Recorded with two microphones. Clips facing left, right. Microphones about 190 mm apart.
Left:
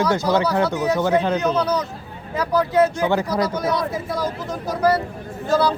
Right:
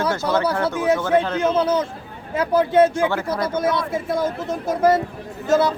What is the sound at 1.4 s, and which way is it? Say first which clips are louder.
A man's voice: right 2 dB; 25° right (ahead or behind).